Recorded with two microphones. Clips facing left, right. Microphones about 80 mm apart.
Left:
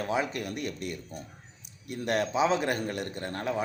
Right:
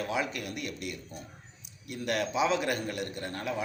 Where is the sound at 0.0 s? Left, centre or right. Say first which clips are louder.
Left 2 dB; left.